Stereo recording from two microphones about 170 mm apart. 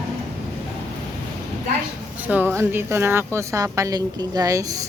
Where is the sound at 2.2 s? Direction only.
10° right (ahead or behind).